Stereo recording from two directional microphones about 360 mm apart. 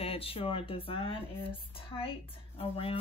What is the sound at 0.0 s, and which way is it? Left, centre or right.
Speech, centre.